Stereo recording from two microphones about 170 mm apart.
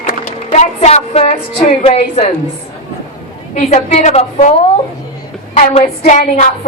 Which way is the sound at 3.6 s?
45° left (ahead or behind).